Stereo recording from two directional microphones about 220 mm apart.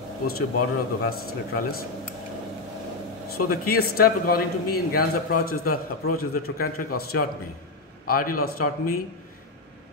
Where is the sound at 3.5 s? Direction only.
45° left (ahead or behind).